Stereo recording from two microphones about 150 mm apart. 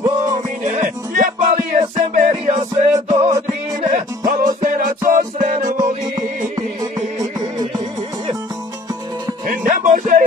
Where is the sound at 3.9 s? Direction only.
60° right (ahead or behind).